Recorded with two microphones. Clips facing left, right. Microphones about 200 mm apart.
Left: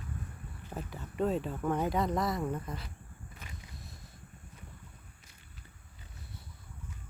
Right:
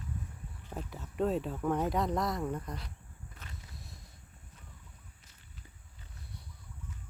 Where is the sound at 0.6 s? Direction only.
Centre (ahead or behind).